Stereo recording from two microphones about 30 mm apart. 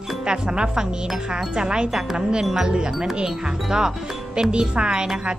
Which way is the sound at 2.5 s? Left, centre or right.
Right.